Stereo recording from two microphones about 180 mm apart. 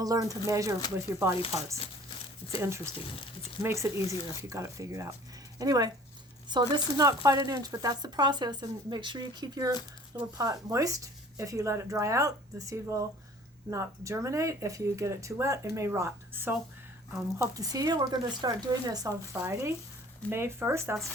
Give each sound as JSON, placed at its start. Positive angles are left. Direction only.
{"t": 0.0, "sound": "speech", "side_deg": -20}
{"t": 2.6, "sound": "speech", "side_deg": -15}